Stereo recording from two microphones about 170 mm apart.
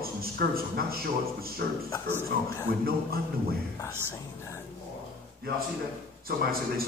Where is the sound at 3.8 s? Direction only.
15° left (ahead or behind).